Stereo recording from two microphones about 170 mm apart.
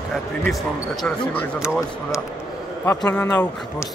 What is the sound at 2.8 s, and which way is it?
Speech, 15° left (ahead or behind).